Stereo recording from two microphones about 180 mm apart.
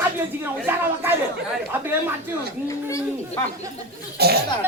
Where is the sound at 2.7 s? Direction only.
15° left (ahead or behind).